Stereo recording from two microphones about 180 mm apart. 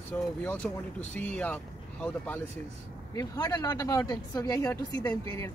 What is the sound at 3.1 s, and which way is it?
A woman's voice, 20° left (ahead or behind).